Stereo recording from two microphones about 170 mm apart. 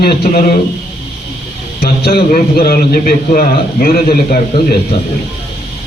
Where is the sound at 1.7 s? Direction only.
65° left (ahead or behind).